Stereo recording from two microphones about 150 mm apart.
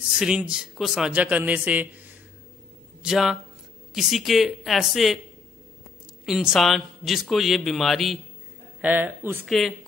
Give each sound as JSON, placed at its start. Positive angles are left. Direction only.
{"t": 0.1, "sound": "a man's voice", "side_deg": -5}
{"t": 3.0, "sound": "a man's voice", "side_deg": -5}
{"t": 6.2, "sound": "a man's voice", "side_deg": 0}
{"t": 8.8, "sound": "a man's voice", "side_deg": -10}
{"t": 9.5, "sound": "a man's voice", "side_deg": 0}